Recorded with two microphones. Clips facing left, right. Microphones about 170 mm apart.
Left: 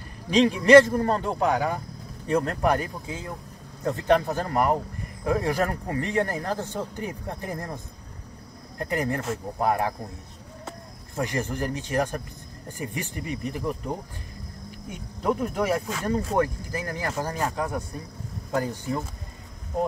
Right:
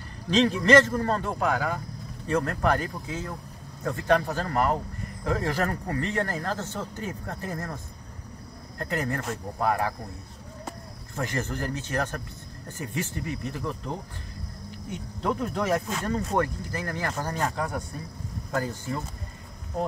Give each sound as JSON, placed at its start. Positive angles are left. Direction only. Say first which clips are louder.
{"t": 0.3, "sound": "speech", "louder": "left 4 dB", "side_deg": 10}
{"t": 11.1, "sound": "speech", "louder": "left 3 dB", "side_deg": 15}